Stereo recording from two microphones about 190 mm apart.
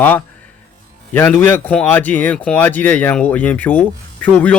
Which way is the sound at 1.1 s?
10° left (ahead or behind).